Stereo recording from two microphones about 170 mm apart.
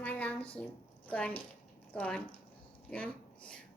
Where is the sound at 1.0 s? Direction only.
10° left (ahead or behind).